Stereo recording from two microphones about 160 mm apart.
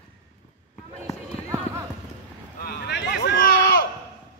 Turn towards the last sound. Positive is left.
turn(degrees=90)